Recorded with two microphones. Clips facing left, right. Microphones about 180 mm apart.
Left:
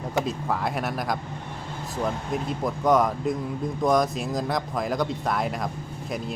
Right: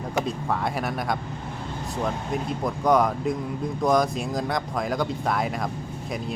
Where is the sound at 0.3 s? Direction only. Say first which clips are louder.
Even; centre (ahead or behind).